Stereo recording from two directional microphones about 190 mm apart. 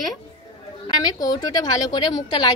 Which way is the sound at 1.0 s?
20° left (ahead or behind).